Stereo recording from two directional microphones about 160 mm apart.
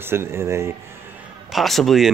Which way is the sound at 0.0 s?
15° right (ahead or behind).